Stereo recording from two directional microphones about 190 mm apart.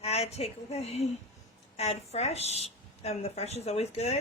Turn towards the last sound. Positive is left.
turn(degrees=35)  # may be behind; listen again after turning